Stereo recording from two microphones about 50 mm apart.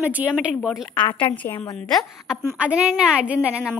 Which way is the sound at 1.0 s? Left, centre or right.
Left.